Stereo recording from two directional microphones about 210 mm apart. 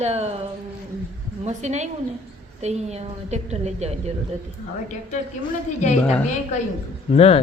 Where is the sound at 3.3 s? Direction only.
30° right (ahead or behind).